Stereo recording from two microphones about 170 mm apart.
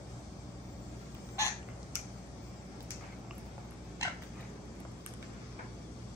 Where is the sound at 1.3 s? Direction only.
15° left (ahead or behind).